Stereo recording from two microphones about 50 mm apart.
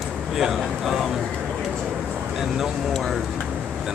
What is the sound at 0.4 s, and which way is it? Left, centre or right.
Speech, centre.